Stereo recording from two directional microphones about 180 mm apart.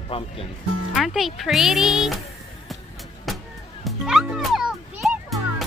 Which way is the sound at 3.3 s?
Centre (ahead or behind).